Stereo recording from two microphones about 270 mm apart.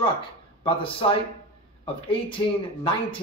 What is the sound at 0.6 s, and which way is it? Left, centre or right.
Speech, centre.